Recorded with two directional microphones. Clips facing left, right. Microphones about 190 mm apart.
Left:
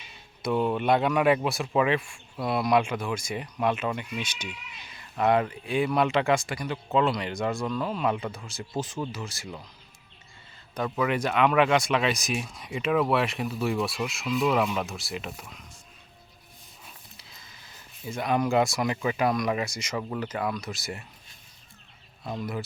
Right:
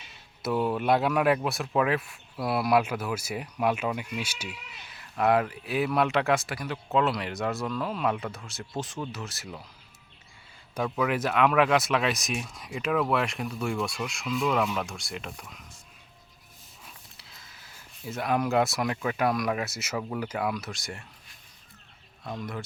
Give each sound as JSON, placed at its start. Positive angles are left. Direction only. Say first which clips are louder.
{"t": 0.4, "sound": "speech", "louder": "left 1 dB", "side_deg": -5}
{"t": 10.8, "sound": "speech", "louder": "left 1 dB", "side_deg": 0}
{"t": 16.8, "sound": "speech", "louder": "even", "side_deg": 0}
{"t": 22.2, "sound": "speech", "louder": "left 3 dB", "side_deg": 5}